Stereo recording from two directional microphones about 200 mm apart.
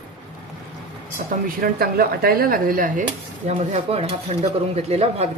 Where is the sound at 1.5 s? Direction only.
50° right (ahead or behind).